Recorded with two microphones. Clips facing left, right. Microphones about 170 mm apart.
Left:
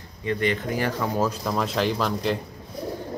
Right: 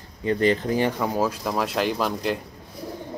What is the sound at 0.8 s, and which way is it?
Speech, 15° right (ahead or behind).